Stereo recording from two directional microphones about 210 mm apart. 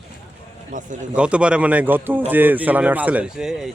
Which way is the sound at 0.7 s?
40° right (ahead or behind).